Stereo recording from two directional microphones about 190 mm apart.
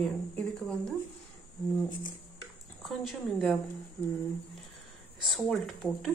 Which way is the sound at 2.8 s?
Centre (ahead or behind).